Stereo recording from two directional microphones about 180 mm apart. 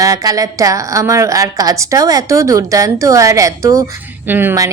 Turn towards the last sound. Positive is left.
turn(degrees=-15)  # may be behind; listen again after turning